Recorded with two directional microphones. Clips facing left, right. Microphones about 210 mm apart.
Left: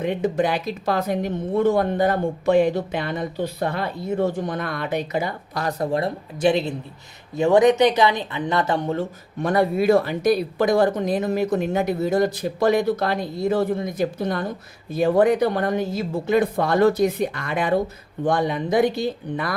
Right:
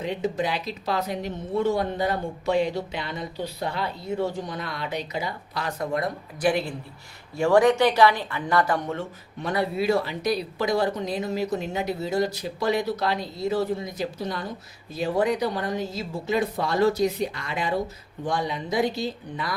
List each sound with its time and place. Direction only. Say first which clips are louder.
0.0 s speech: left 5 dB; 55° left (ahead or behind); by 9.0 s 25° left (ahead or behind)
9.0 s a woman's voice: left 7 dB; 50° left (ahead or behind)